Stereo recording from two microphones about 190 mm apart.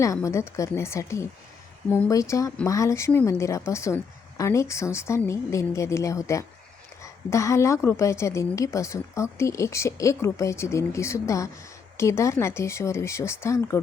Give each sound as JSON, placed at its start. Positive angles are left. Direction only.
{"t": 0.0, "sound": "a woman's voice", "side_deg": 15}